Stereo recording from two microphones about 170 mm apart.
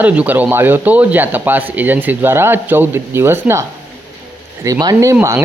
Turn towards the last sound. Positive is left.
turn(degrees=-15)  # may be behind; listen again after turning